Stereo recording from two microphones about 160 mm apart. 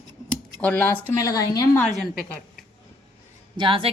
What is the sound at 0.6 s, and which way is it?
Speech, 10° left (ahead or behind).